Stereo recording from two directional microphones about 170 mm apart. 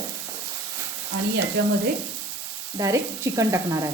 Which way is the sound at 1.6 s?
90° right.